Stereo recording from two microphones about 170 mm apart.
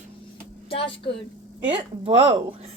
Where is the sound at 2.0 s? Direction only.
35° right (ahead or behind).